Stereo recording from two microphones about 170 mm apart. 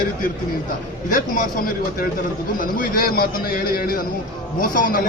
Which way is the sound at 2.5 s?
55° left (ahead or behind).